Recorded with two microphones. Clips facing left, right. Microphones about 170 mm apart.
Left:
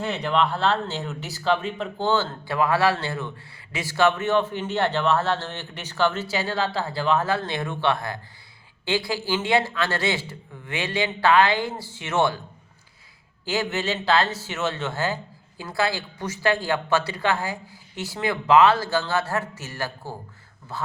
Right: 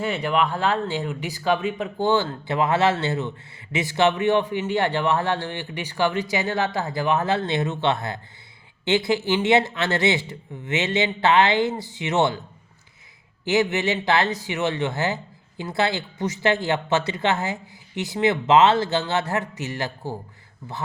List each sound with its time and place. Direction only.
0.0 s speech: 10° right (ahead or behind)
13.4 s speech: 20° right (ahead or behind)